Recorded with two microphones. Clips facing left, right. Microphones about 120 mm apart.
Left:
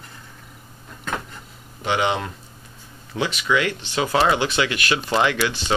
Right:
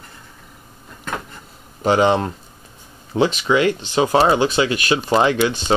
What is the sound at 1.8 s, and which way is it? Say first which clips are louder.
Speech: right 7 dB; 35° right (ahead or behind).